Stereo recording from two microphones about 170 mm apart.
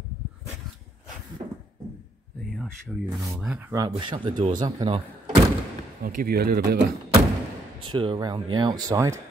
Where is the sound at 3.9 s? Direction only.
30° right (ahead or behind).